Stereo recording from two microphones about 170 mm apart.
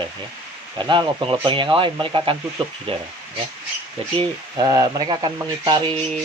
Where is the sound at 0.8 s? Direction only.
25° right (ahead or behind).